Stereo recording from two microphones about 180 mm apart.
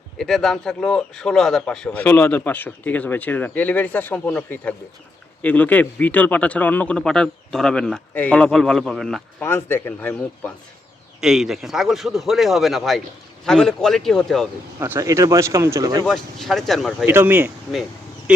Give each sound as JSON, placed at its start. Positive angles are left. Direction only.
{"t": 0.2, "sound": "a man's voice", "side_deg": 0}
{"t": 9.4, "sound": "a man's voice", "side_deg": 15}
{"t": 11.2, "sound": "a man's voice", "side_deg": 0}
{"t": 14.8, "sound": "speech", "side_deg": -15}
{"t": 16.0, "sound": "a man's voice", "side_deg": 0}
{"t": 17.1, "sound": "speech", "side_deg": -10}
{"t": 18.3, "sound": "fowl", "side_deg": -5}